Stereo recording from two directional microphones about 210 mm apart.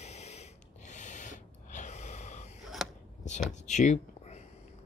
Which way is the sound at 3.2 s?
35° left (ahead or behind).